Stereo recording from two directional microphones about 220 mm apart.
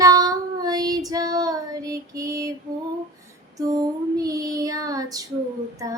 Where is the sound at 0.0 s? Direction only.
15° right (ahead or behind).